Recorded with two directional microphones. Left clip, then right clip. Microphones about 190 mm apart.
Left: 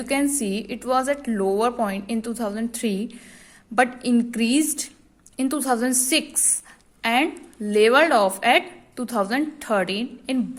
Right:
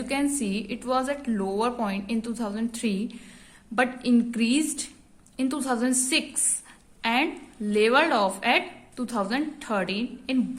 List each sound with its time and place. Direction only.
0.0 s speech: 20° left (ahead or behind)